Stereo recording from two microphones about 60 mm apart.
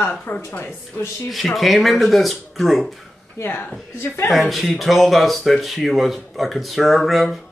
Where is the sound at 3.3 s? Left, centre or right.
Left.